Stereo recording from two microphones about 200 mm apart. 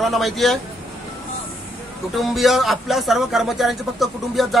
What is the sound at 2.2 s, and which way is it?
Speech, centre (ahead or behind).